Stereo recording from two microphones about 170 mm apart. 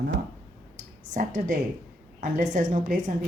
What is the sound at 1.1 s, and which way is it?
Speech, 50° right (ahead or behind).